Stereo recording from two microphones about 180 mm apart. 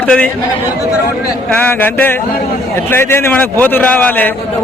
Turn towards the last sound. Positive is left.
turn(degrees=10)  # may be behind; listen again after turning